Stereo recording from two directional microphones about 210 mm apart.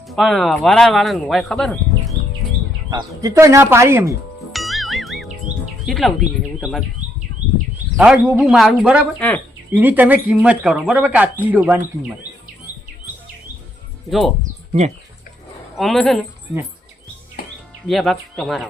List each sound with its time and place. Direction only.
0.1 s speech: centre (ahead or behind)
3.2 s speech: 15° right (ahead or behind)
4.5 s music: centre (ahead or behind)
5.8 s speech: centre (ahead or behind)
7.9 s speech: 5° right (ahead or behind)
14.7 s speech: 30° right (ahead or behind)
15.7 s speech: centre (ahead or behind)
17.4 s music: 45° left (ahead or behind)
17.8 s speech: centre (ahead or behind)